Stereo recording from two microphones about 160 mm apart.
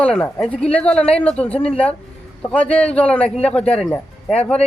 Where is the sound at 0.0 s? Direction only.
5° left (ahead or behind).